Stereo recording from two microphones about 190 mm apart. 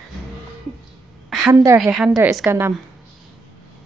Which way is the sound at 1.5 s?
15° right (ahead or behind).